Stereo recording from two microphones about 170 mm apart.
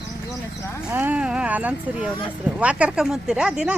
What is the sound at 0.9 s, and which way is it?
Speech, 10° right (ahead or behind).